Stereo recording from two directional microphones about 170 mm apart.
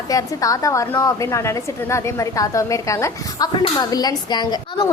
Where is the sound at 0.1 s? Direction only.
20° left (ahead or behind).